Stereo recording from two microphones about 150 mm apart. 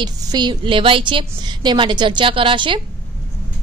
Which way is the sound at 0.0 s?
25° right (ahead or behind).